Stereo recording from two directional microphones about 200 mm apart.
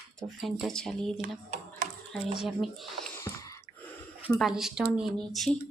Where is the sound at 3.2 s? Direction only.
15° left (ahead or behind).